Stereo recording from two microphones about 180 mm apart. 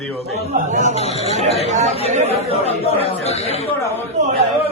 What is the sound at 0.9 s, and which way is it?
Speech, 35° left (ahead or behind).